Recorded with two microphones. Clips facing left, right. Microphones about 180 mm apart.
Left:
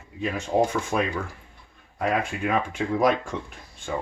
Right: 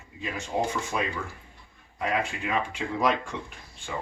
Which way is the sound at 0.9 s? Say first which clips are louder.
Left 5 dB; 50° left (ahead or behind).